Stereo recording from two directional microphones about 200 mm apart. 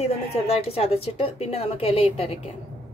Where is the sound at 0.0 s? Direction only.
30° left (ahead or behind).